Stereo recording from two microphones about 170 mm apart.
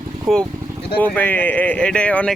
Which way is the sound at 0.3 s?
Centre (ahead or behind).